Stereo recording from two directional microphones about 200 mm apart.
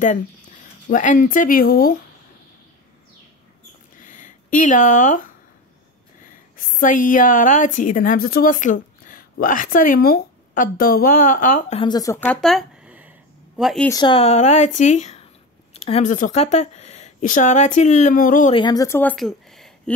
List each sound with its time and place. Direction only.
0.9 s a woman's voice: 40° left (ahead or behind)
4.0 s a sound: 40° left (ahead or behind)
6.7 s a woman's voice: 40° left (ahead or behind)
11.8 s speech: 20° left (ahead or behind)
12.3 s a sound: centre (ahead or behind)
13.6 s speech: centre (ahead or behind)
13.8 s speech: 20° left (ahead or behind); by 18.5 s 40° left (ahead or behind)
18.5 s speech: 20° left (ahead or behind); by 19.7 s centre (ahead or behind)